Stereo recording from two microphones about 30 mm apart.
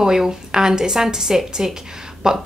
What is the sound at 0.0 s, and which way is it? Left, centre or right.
Speech, right.